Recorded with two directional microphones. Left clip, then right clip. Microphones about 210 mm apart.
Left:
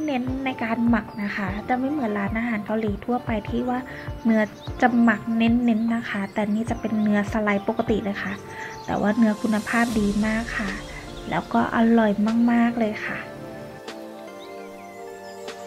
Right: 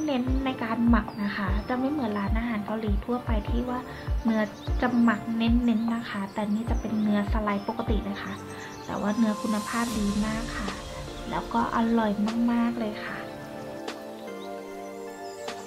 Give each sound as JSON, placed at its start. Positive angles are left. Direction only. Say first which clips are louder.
{"t": 0.0, "sound": "a woman's voice", "louder": "left 2 dB", "side_deg": 15}